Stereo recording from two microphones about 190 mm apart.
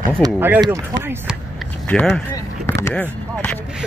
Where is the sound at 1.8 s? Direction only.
5° left (ahead or behind).